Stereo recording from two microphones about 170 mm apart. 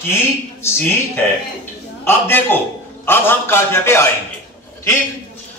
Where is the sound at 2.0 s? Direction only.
10° left (ahead or behind).